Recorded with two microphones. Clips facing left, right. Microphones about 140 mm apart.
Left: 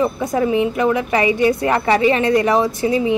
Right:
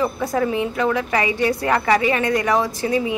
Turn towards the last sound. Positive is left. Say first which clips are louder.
# left 4 dB
turn(degrees=25)  # may be behind; listen again after turning